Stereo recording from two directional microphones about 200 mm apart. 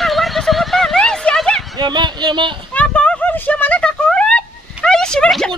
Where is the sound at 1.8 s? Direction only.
20° right (ahead or behind).